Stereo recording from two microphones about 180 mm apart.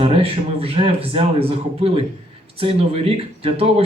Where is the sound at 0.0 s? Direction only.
30° right (ahead or behind).